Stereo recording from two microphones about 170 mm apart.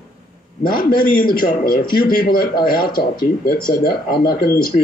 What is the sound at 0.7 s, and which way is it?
A man's voice, 60° left (ahead or behind).